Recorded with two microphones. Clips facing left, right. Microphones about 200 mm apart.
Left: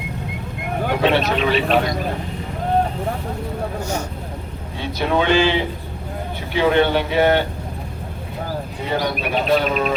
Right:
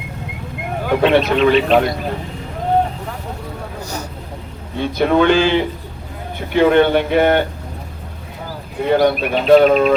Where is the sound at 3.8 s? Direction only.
35° right (ahead or behind).